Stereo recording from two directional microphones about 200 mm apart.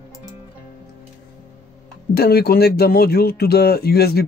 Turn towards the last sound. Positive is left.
turn(degrees=50)  # may be behind; listen again after turning